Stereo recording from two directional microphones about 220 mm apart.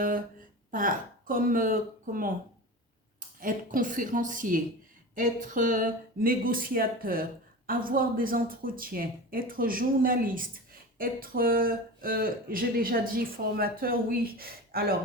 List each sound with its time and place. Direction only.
0.7 s speech: 40° right (ahead or behind)